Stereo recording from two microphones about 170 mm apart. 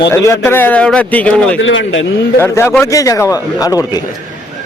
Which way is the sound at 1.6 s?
90° left.